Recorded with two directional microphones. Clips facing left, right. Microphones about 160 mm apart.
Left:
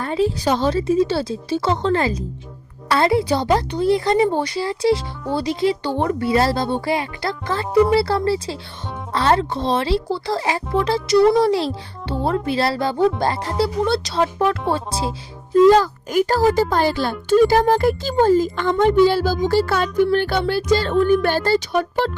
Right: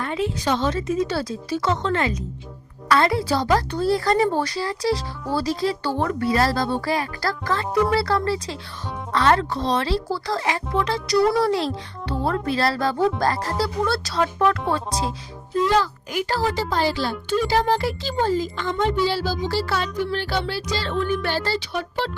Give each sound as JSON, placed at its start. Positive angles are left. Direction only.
{"t": 0.0, "sound": "a woman's voice", "side_deg": 35}
{"t": 4.9, "sound": "speech", "side_deg": -5}
{"t": 5.4, "sound": "a woman's voice", "side_deg": 20}
{"t": 15.6, "sound": "a child's voice", "side_deg": 45}